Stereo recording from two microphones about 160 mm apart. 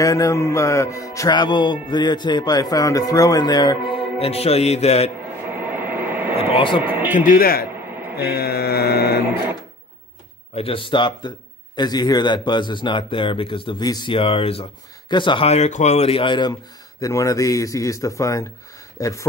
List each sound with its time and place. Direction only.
0.0 s music: 20° left (ahead or behind); by 5.1 s 40° left (ahead or behind)
5.5 s a sound: 10° right (ahead or behind)
6.5 s a man's voice: 30° left (ahead or behind)
6.8 s a man's voice: 10° right (ahead or behind)
7.2 s a man's voice: 60° left (ahead or behind)
8.0 s mantra: 15° right (ahead or behind)
8.4 s mantra: 85° left
10.5 s a man's voice: 35° left (ahead or behind)
17.0 s music: 20° left (ahead or behind)